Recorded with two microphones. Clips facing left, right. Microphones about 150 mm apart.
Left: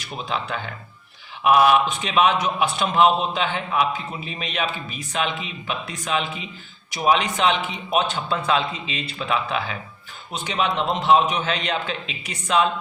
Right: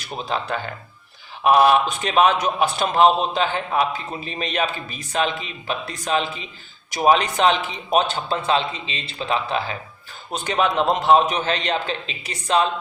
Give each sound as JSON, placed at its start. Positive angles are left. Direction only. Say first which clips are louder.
{"t": 0.3, "sound": "a man's voice", "louder": "right 2 dB", "side_deg": -40}
{"t": 10.3, "sound": "a man's voice", "louder": "right 3 dB", "side_deg": -45}